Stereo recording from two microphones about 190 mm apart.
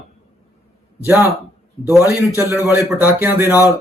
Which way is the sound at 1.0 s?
15° right (ahead or behind).